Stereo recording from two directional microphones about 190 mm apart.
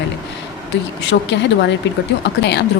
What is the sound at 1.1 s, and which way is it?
Speech, 65° left (ahead or behind).